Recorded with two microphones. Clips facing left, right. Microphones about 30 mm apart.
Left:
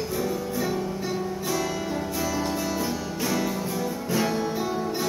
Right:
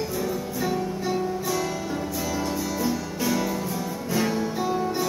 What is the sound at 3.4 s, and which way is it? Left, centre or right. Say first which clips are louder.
Music: even; centre.